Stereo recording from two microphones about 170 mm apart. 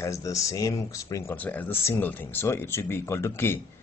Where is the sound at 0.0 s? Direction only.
20° left (ahead or behind).